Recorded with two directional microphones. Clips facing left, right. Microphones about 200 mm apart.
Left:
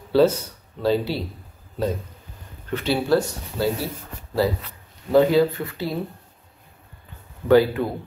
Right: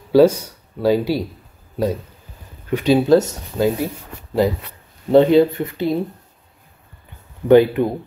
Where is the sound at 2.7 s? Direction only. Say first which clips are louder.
Right 7 dB; 15° right (ahead or behind).